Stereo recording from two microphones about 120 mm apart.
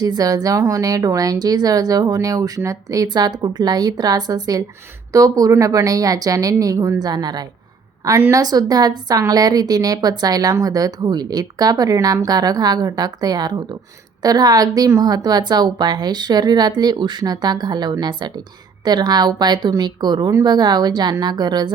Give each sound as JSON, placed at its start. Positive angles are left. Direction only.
{"t": 0.0, "sound": "a woman's voice", "side_deg": -30}